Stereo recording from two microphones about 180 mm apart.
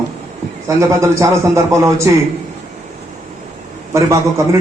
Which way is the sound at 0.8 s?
15° right (ahead or behind).